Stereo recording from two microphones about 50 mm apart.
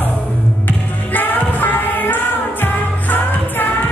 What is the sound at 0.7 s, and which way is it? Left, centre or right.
Music, left.